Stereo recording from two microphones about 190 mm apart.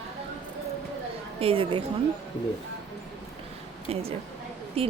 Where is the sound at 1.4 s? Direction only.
30° right (ahead or behind).